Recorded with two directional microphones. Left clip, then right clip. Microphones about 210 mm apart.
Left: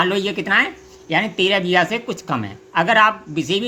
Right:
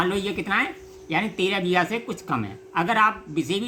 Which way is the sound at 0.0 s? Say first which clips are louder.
Left 6 dB; 20° left (ahead or behind).